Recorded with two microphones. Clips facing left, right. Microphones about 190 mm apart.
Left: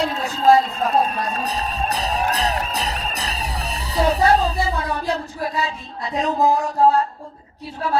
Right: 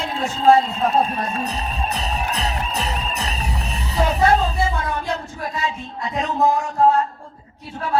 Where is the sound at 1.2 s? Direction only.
35° left (ahead or behind).